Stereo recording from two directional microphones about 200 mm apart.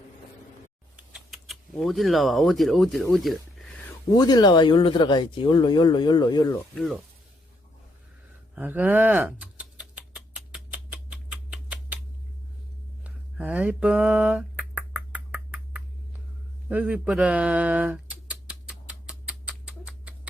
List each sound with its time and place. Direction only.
0.9 s speech: centre (ahead or behind)
4.1 s speech: 20° left (ahead or behind)
6.7 s speech: centre (ahead or behind)
8.5 s a sound: 10° right (ahead or behind)
13.1 s finger snapping: 5° right (ahead or behind)
16.6 s a sound: 5° right (ahead or behind)